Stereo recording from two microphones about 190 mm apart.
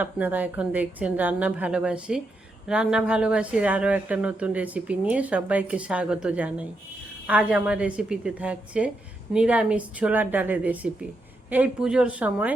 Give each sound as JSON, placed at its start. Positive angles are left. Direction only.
{"t": 0.0, "sound": "a woman's voice", "side_deg": -10}